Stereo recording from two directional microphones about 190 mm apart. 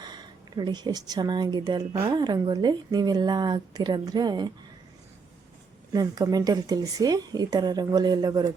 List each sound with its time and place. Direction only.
0.0 s speech: 20° right (ahead or behind)
5.9 s speech: 20° right (ahead or behind)